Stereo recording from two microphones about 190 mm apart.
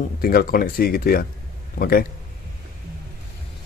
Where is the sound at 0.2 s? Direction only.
55° left (ahead or behind).